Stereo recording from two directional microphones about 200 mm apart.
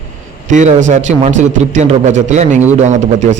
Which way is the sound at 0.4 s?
40° right (ahead or behind).